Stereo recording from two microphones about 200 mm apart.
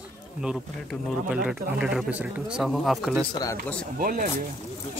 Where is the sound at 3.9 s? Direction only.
45° right (ahead or behind).